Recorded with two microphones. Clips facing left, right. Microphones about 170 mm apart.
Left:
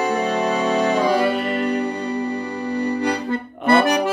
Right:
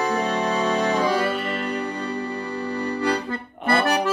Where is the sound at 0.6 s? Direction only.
10° left (ahead or behind).